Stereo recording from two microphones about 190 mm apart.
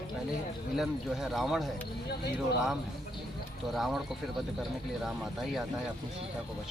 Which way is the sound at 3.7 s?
Centre (ahead or behind).